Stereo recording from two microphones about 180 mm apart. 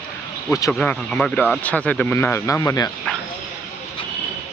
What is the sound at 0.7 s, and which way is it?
Speech, 5° left (ahead or behind).